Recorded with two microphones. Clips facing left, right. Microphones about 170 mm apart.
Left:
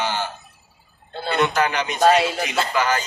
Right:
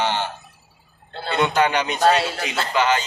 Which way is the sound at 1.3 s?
25° right (ahead or behind).